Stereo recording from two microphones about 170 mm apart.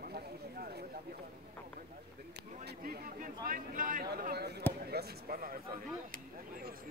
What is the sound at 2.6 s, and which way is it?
Speech, 60° right (ahead or behind).